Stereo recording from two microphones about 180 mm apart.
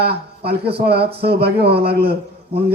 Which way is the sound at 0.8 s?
60° right (ahead or behind).